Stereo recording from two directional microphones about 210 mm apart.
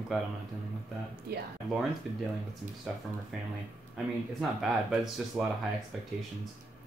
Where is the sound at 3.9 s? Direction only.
Centre (ahead or behind).